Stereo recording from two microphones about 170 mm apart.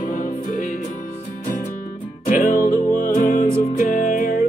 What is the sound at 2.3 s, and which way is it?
Music, 55° left (ahead or behind).